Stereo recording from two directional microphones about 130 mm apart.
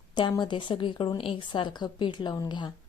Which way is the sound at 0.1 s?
35° left (ahead or behind).